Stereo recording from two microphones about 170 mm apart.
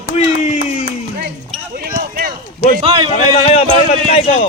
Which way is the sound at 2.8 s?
30° right (ahead or behind).